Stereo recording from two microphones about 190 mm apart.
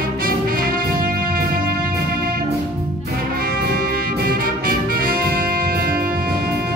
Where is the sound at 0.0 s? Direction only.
50° right (ahead or behind).